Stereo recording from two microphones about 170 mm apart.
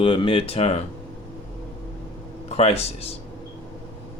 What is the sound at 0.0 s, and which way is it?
Speech, 30° left (ahead or behind).